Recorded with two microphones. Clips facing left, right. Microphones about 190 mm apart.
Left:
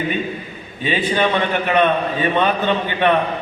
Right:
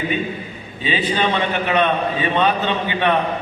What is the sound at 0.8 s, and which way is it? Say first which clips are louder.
A man's voice: left 2 dB; 50° left (ahead or behind).